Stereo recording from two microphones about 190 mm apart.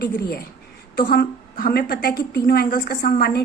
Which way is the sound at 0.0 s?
55° left (ahead or behind).